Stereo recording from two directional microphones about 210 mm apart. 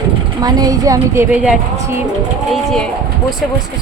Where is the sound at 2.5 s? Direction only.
Centre (ahead or behind).